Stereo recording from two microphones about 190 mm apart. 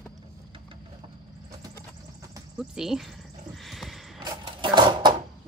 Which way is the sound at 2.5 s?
5° right (ahead or behind).